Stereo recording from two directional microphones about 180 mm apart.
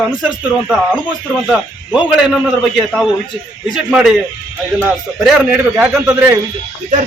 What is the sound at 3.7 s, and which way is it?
Speech, centre (ahead or behind).